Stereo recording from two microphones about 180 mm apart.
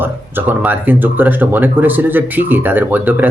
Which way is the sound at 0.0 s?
10° right (ahead or behind).